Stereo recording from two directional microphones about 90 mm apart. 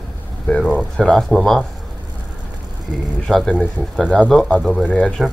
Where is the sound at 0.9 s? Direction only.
5° left (ahead or behind).